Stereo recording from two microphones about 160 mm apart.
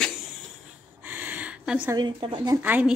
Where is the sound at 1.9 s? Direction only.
30° right (ahead or behind).